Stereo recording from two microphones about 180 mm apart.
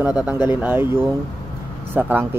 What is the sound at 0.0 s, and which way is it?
Speech, 5° right (ahead or behind).